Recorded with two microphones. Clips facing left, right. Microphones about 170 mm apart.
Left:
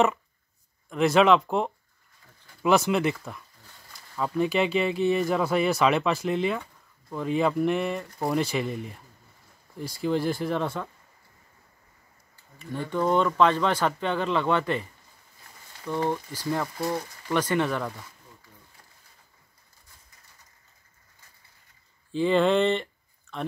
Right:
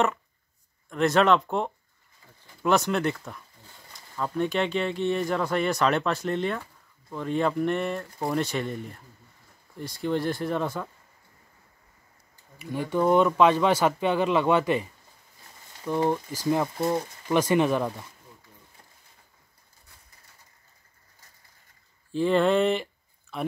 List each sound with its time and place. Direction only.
0.8 s speech: 5° left (ahead or behind)
12.7 s speech: 10° right (ahead or behind)
22.1 s speech: centre (ahead or behind)